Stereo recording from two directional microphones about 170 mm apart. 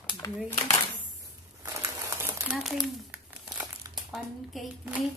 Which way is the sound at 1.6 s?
20° right (ahead or behind).